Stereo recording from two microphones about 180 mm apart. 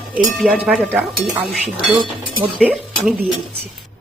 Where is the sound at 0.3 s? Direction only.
Centre (ahead or behind).